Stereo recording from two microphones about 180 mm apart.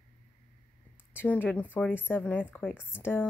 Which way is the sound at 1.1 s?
10° left (ahead or behind).